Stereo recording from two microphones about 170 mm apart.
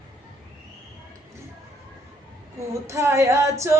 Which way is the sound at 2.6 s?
15° right (ahead or behind).